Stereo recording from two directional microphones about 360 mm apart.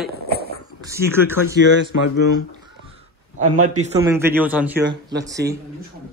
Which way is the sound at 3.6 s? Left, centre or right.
Centre.